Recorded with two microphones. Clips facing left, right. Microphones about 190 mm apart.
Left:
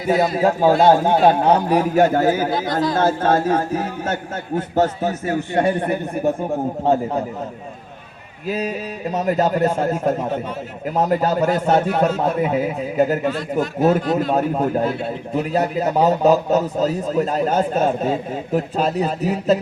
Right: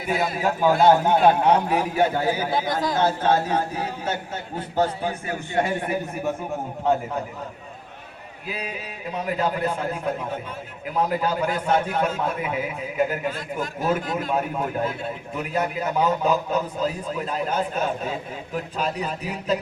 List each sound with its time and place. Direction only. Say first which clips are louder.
0.3 s a man's voice: left 2 dB; 35° left (ahead or behind)
8.4 s a man's voice: left 9 dB; 40° left (ahead or behind)